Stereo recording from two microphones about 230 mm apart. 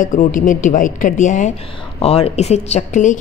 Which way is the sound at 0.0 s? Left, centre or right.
Left.